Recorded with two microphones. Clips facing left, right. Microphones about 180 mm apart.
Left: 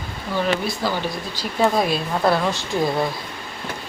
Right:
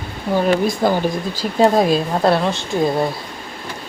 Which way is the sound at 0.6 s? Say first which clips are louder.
Right 7 dB; 50° right (ahead or behind).